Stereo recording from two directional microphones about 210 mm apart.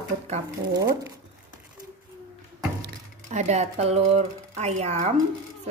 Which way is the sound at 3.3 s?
35° right (ahead or behind).